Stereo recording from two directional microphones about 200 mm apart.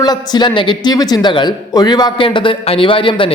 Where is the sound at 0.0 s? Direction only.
20° left (ahead or behind).